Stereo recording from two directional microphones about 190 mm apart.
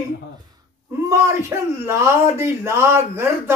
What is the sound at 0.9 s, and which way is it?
Speech, 15° right (ahead or behind).